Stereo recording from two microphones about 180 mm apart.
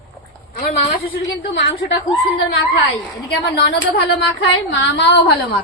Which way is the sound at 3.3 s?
70° left (ahead or behind).